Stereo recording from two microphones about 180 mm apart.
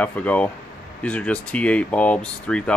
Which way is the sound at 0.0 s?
10° left (ahead or behind).